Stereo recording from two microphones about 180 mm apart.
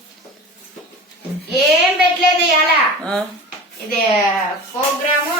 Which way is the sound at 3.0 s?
5° left (ahead or behind).